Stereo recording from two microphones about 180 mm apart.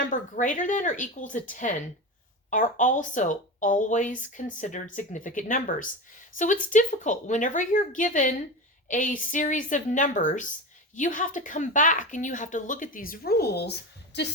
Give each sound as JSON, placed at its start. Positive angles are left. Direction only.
{"t": 0.0, "sound": "speech", "side_deg": 45}